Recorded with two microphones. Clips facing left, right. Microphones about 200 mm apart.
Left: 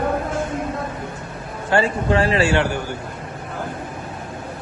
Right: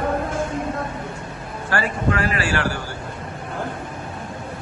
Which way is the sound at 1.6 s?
25° left (ahead or behind).